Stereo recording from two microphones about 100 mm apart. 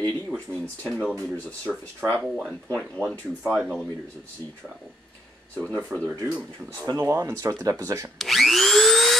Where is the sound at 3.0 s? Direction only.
25° right (ahead or behind).